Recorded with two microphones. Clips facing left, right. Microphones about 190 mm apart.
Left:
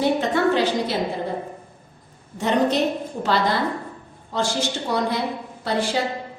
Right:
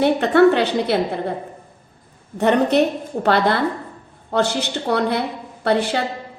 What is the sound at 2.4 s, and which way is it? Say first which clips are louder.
A woman's voice: right 4 dB; 60° right (ahead or behind).